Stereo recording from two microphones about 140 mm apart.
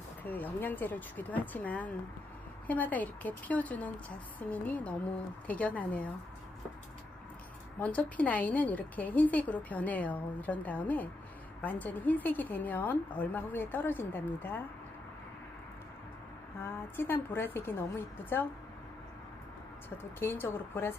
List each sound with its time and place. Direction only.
0.2 s a woman's voice: 15° left (ahead or behind)
7.8 s a woman's voice: 10° left (ahead or behind)
16.6 s a woman's voice: 15° left (ahead or behind)
20.0 s a woman's voice: 15° left (ahead or behind)